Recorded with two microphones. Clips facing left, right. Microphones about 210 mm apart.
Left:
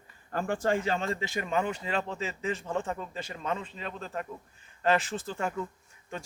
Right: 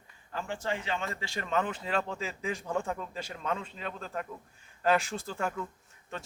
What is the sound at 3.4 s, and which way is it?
Speech, 5° left (ahead or behind).